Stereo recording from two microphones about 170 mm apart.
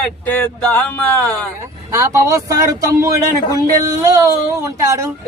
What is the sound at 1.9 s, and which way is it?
Speech, 20° right (ahead or behind).